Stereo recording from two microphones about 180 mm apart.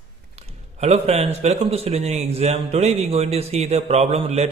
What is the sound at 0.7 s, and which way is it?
A man's voice, 35° right (ahead or behind).